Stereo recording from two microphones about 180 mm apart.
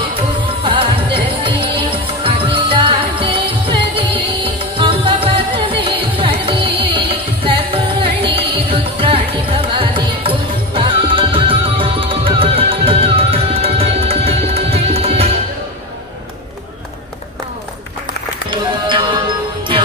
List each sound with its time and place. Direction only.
0.7 s music: 30° right (ahead or behind)
18.5 s music: 25° right (ahead or behind)